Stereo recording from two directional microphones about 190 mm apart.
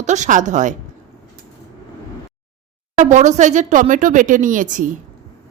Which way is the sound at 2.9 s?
40° right (ahead or behind).